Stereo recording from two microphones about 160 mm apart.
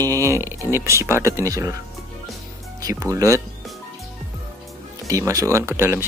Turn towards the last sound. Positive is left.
turn(degrees=-15)  # may be behind; listen again after turning